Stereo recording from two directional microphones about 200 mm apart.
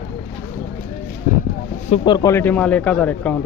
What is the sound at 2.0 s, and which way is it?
Speech, 20° left (ahead or behind).